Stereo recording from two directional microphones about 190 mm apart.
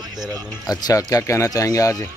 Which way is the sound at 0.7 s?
20° left (ahead or behind).